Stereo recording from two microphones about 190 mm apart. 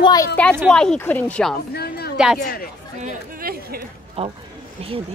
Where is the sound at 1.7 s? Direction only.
55° left (ahead or behind).